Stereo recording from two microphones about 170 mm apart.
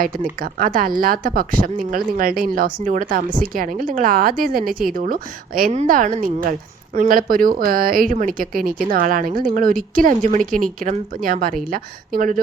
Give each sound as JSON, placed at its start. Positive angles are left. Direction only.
{"t": 0.0, "sound": "a woman's voice", "side_deg": -55}